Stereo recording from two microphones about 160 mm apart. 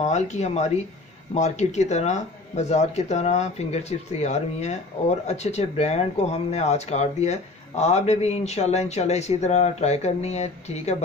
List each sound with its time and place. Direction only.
0.0 s speech: 45° left (ahead or behind)